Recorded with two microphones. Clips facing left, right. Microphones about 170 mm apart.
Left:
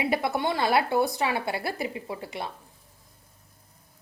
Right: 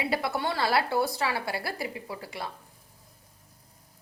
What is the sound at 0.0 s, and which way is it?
Speech, 20° left (ahead or behind).